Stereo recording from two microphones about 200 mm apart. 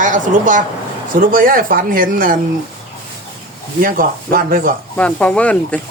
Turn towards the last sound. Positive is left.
turn(degrees=5)  # may be behind; listen again after turning